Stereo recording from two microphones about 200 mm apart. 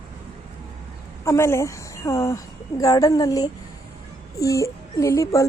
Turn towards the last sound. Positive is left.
turn(degrees=15)  # may be behind; listen again after turning